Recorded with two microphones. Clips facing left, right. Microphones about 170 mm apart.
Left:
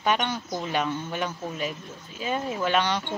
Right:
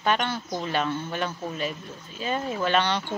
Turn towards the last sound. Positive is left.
turn(degrees=10)  # may be behind; listen again after turning